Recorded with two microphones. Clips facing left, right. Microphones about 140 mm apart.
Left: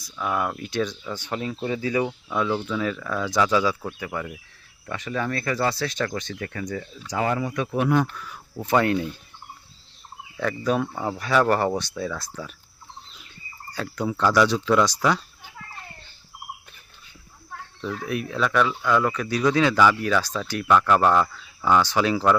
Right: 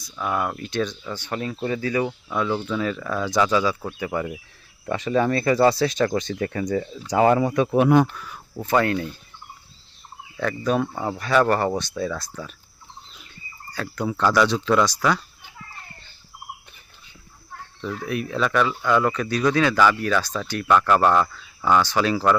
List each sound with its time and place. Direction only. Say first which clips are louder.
0.2 s speech: right 1 dB; 5° right (ahead or behind)
0.5 s speech: right 1 dB; 10° left (ahead or behind)
2.0 s speech: even; centre (ahead or behind)
4.1 s speech: right 7 dB; 15° right (ahead or behind)
4.9 s speech: right 7 dB; 25° right (ahead or behind)
7.3 s speech: right 7 dB; 35° right (ahead or behind); by 8.3 s 20° right (ahead or behind)
8.6 s speech: even; 15° left (ahead or behind)
10.7 s speech: right 1 dB; centre (ahead or behind)
14.1 s speech: even; 10° left (ahead or behind)
14.8 s speech: even; 20° left (ahead or behind)
17.7 s speech: right 1 dB; 5° right (ahead or behind)
19.1 s speech: right 1 dB; 5° left (ahead or behind)
21.8 s speech: even; 15° left (ahead or behind)